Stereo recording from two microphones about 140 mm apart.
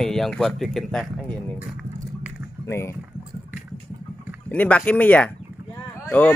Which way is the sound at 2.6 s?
20° left (ahead or behind).